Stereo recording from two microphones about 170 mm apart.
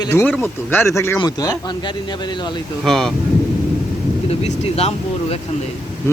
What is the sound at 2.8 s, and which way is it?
Speech, 5° left (ahead or behind).